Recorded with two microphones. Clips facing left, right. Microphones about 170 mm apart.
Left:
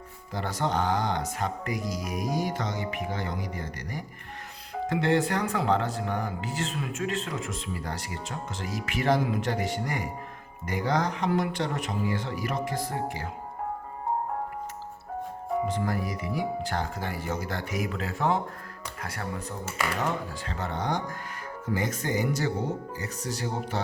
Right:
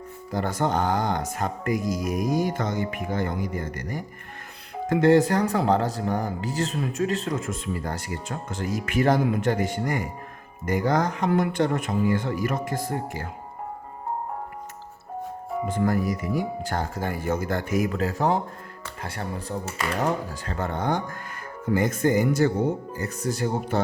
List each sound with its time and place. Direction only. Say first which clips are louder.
0.3 s speech: right 4 dB; 45° right (ahead or behind)
15.7 s speech: right 6 dB; 50° right (ahead or behind); by 19.5 s 30° right (ahead or behind)
20.0 s speech: right 4 dB; 45° right (ahead or behind)